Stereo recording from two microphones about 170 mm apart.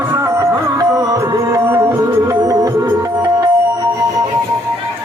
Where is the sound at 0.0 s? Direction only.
15° right (ahead or behind).